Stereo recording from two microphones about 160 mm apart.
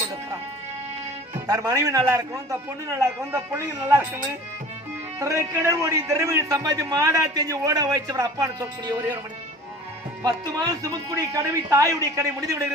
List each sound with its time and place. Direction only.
1.5 s a man's voice: 20° right (ahead or behind)
5.2 s a man's voice: 20° right (ahead or behind)
10.2 s a man's voice: 20° right (ahead or behind)